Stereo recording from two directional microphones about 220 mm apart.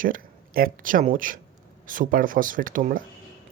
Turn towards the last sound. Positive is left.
turn(degrees=-40)  # may be behind; listen again after turning